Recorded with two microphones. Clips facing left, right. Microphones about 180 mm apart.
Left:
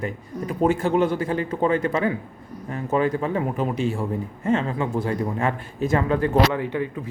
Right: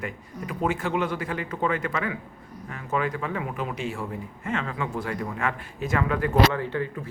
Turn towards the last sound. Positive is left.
turn(degrees=15)  # may be behind; listen again after turning